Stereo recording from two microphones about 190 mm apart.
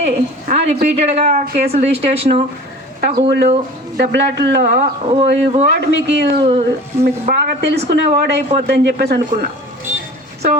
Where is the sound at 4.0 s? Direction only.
60° right (ahead or behind).